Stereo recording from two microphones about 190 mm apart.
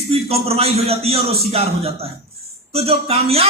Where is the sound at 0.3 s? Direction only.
30° right (ahead or behind).